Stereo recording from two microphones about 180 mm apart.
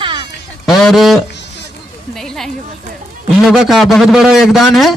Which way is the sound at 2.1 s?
Centre (ahead or behind).